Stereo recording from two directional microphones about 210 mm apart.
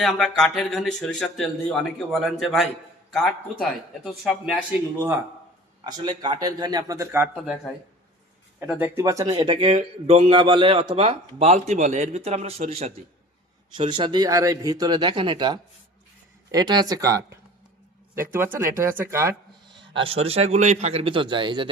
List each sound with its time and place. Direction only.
0.0 s speech: centre (ahead or behind)
5.8 s a man's voice: 20° right (ahead or behind)
8.5 s a man's voice: 10° right (ahead or behind)
19.9 s speech: 25° right (ahead or behind)